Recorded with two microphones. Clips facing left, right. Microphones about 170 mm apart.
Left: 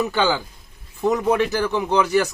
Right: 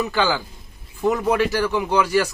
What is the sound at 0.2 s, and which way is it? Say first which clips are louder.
Speech: even; 20° left (ahead or behind).